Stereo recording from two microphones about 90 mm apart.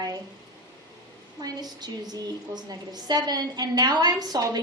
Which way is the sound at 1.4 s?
50° right (ahead or behind).